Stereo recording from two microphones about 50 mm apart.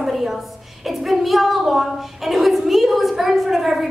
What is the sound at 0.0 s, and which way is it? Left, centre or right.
A woman's voice, centre.